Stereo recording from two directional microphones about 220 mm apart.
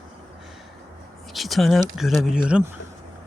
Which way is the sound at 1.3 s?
Centre (ahead or behind).